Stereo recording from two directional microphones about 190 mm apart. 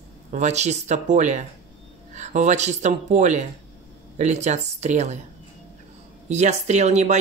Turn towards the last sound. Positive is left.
turn(degrees=-35)  # may be behind; listen again after turning